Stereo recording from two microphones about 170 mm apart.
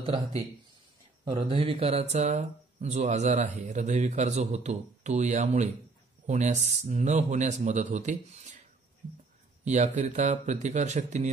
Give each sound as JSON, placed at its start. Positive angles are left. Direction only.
{"t": 0.0, "sound": "speech", "side_deg": -35}
{"t": 9.7, "sound": "speech", "side_deg": -45}